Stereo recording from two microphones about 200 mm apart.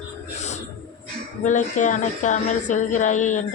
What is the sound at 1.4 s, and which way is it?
Speech, 40° left (ahead or behind).